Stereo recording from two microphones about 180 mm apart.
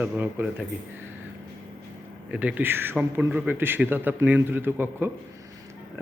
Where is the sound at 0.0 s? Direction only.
10° right (ahead or behind).